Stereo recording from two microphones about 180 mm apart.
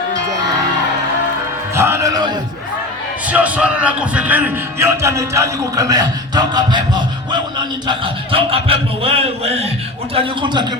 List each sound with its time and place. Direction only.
1.7 s music: 15° right (ahead or behind)
3.2 s a man's voice: 10° right (ahead or behind); by 10.7 s 25° right (ahead or behind)